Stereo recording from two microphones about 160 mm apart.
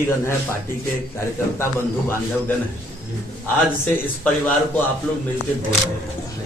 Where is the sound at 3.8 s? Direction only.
10° left (ahead or behind).